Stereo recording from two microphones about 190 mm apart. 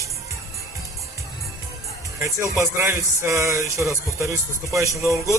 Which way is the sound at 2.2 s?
15° right (ahead or behind).